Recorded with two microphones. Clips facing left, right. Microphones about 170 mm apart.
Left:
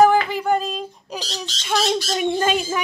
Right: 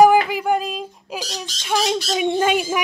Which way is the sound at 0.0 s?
10° right (ahead or behind).